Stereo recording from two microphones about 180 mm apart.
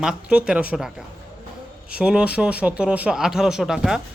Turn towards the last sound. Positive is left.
turn(degrees=0)  # may be behind; listen again after turning